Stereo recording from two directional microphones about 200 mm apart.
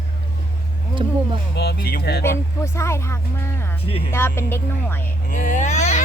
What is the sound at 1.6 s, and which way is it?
Speech, 55° left (ahead or behind).